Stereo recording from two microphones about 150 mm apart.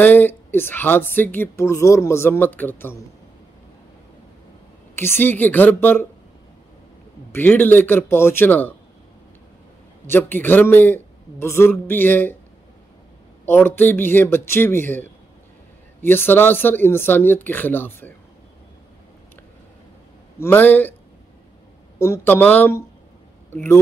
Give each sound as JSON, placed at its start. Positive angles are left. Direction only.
{"t": 0.0, "sound": "a woman's voice", "side_deg": 10}
{"t": 4.9, "sound": "a woman's voice", "side_deg": 15}
{"t": 7.3, "sound": "a woman's voice", "side_deg": 15}
{"t": 10.0, "sound": "a woman's voice", "side_deg": 15}
{"t": 13.5, "sound": "a woman's voice", "side_deg": 15}
{"t": 20.3, "sound": "a woman's voice", "side_deg": 15}
{"t": 21.9, "sound": "a woman's voice", "side_deg": 20}